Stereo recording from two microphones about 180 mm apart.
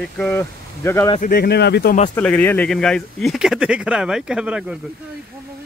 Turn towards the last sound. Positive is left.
turn(degrees=-5)  # may be behind; listen again after turning